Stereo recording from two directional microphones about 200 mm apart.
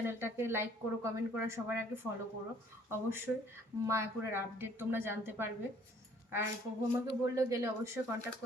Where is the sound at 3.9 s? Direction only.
15° right (ahead or behind).